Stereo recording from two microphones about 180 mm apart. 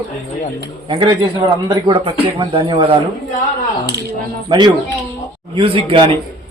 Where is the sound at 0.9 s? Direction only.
25° right (ahead or behind).